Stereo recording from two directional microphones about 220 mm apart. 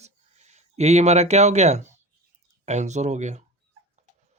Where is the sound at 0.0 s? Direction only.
30° right (ahead or behind).